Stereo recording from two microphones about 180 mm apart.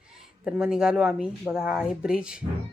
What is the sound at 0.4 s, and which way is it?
A woman's voice, 5° right (ahead or behind).